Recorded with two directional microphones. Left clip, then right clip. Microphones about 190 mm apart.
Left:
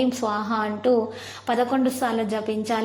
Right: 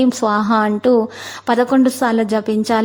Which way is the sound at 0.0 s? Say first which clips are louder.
Right 8 dB; 40° right (ahead or behind).